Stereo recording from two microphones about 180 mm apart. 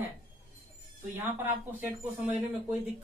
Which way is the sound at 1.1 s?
10° right (ahead or behind).